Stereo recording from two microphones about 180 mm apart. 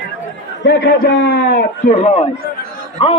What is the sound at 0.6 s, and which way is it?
Speech, 65° left (ahead or behind).